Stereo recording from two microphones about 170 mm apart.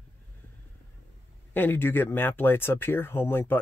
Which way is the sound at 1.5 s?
10° left (ahead or behind).